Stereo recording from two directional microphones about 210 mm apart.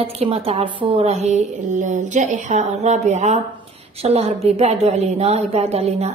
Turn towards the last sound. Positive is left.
turn(degrees=-30)  # may be behind; listen again after turning